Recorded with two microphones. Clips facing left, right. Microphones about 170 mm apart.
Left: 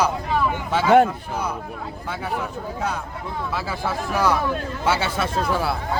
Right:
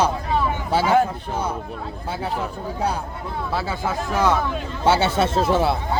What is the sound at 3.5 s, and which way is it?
Speech, 25° right (ahead or behind).